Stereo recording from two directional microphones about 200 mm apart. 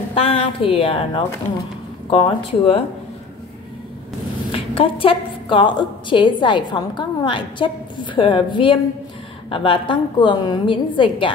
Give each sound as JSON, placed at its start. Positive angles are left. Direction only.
{"t": 0.1, "sound": "a woman's voice", "side_deg": 30}
{"t": 4.5, "sound": "a woman's voice", "side_deg": 25}